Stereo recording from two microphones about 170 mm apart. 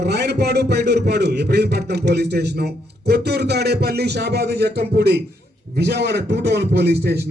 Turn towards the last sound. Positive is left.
turn(degrees=-70)  # may be behind; listen again after turning